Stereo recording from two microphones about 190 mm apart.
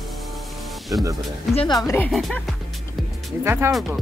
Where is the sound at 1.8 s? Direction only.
10° left (ahead or behind).